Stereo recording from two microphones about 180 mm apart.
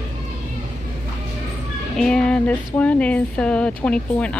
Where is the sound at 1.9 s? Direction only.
5° left (ahead or behind).